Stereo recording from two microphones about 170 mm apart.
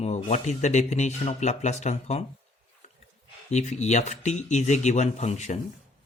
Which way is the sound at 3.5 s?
45° left (ahead or behind).